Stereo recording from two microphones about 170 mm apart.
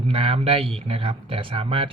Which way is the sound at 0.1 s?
35° right (ahead or behind).